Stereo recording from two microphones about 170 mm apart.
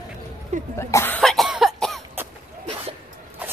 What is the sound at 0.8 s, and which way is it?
Cough, 15° left (ahead or behind).